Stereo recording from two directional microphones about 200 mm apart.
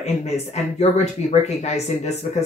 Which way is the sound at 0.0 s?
35° left (ahead or behind).